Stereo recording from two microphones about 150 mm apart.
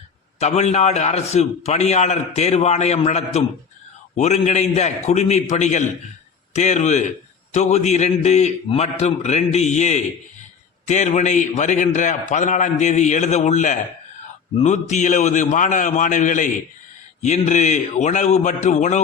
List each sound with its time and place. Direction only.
0.3 s a man's voice: 45° left (ahead or behind)